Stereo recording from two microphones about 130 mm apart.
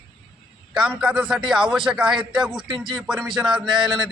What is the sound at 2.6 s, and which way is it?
Speech, 40° right (ahead or behind).